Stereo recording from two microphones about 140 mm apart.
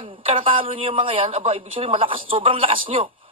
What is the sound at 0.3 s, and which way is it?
A woman's voice, 40° right (ahead or behind).